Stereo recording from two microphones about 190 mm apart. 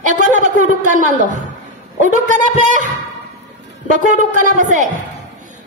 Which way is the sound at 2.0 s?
40° right (ahead or behind).